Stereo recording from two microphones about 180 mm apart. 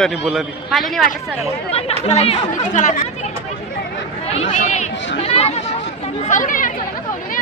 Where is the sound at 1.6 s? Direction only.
35° left (ahead or behind).